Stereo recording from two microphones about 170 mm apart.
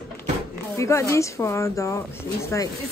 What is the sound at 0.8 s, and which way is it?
A woman's voice, 15° left (ahead or behind).